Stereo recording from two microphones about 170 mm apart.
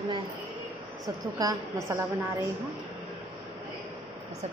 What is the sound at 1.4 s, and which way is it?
A woman's voice, 20° right (ahead or behind).